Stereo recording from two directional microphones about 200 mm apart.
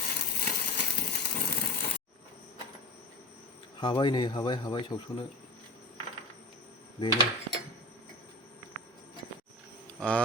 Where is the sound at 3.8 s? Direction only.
20° left (ahead or behind).